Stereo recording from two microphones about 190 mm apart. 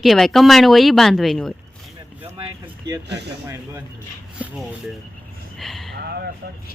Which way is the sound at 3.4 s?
15° right (ahead or behind).